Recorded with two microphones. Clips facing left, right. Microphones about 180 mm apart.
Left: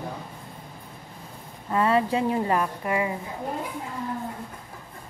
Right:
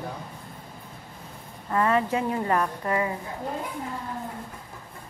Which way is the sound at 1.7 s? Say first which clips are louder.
Left 1 dB; 20° left (ahead or behind).